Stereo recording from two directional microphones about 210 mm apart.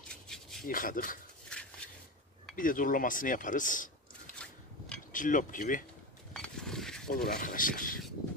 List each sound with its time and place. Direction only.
0.1 s rub: centre (ahead or behind)
0.7 s speech: 40° left (ahead or behind)
2.5 s speech: 40° left (ahead or behind)
5.1 s speech: 40° left (ahead or behind)
6.3 s a sound: 5° left (ahead or behind)
7.1 s speech: 40° left (ahead or behind)